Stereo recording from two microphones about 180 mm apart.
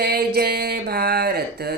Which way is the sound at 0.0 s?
65° right (ahead or behind).